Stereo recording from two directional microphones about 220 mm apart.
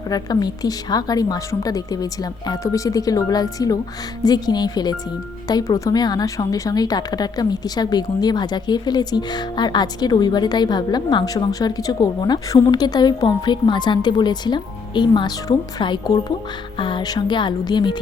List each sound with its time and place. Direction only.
0.1 s a woman's voice: 15° left (ahead or behind)